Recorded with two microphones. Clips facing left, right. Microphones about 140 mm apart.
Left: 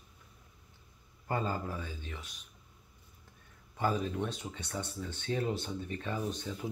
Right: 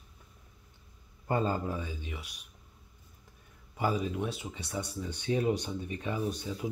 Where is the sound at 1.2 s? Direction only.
20° right (ahead or behind).